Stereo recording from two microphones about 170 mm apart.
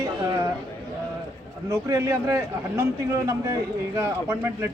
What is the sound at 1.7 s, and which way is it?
A man's voice, 15° right (ahead or behind).